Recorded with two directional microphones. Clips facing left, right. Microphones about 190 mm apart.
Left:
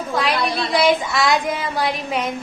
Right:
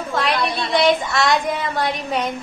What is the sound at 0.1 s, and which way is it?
Child singing, centre (ahead or behind).